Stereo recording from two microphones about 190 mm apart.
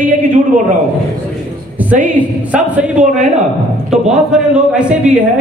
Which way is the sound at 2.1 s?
5° right (ahead or behind).